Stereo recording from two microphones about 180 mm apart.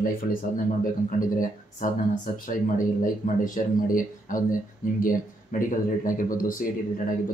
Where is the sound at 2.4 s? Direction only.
50° left (ahead or behind).